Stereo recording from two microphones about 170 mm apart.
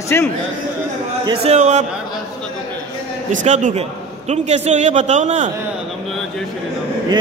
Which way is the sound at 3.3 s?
45° right (ahead or behind).